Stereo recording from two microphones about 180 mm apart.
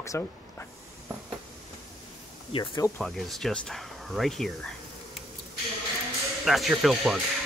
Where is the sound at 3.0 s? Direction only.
Centre (ahead or behind).